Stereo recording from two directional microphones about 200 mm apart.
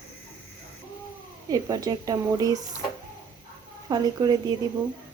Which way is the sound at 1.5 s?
20° right (ahead or behind).